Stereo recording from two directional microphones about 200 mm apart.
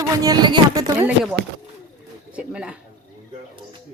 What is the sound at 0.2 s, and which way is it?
Speech, 20° right (ahead or behind).